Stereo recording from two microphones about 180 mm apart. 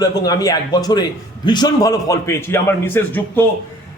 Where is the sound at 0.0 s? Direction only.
20° left (ahead or behind).